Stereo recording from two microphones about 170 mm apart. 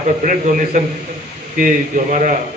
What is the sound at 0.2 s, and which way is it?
A man's voice, 50° right (ahead or behind).